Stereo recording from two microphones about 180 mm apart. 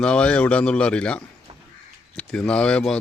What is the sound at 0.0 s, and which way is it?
Speech, 5° left (ahead or behind).